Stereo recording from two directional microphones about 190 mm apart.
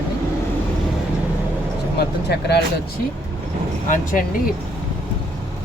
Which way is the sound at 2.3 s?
60° left (ahead or behind).